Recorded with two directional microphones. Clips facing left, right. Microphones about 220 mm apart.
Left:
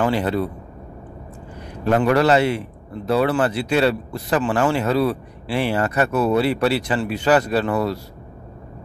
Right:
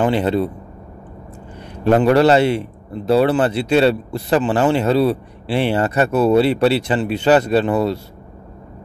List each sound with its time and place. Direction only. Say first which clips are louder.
0.0 s speech: right 3 dB; 25° right (ahead or behind)
2.0 s speech: right 3 dB; 30° right (ahead or behind)